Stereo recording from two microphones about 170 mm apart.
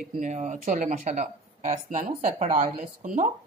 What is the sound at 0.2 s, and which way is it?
Speech, 45° right (ahead or behind).